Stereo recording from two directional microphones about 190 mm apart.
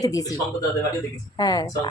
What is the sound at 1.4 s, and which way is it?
Speech, 20° left (ahead or behind).